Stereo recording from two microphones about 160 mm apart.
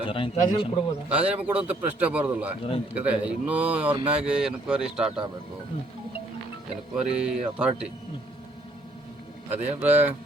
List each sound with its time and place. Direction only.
0.0 s a man's voice: 35° left (ahead or behind)
1.1 s a man's voice: 10° right (ahead or behind)
6.9 s speech: 5° right (ahead or behind)
9.5 s a man's voice: 10° right (ahead or behind)